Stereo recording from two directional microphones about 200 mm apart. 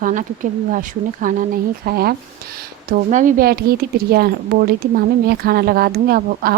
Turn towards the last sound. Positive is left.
turn(degrees=-45)  # may be behind; listen again after turning